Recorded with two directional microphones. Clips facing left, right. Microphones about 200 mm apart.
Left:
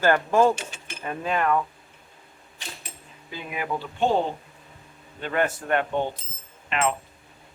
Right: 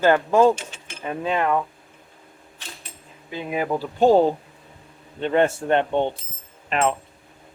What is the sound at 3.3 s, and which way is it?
Speech, 35° right (ahead or behind).